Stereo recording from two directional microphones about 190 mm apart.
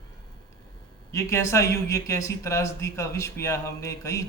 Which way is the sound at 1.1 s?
15° left (ahead or behind).